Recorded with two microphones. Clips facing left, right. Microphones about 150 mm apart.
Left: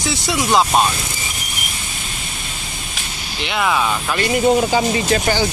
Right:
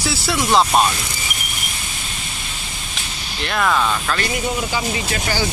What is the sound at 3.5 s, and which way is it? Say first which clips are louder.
Speech: even; 5° left (ahead or behind).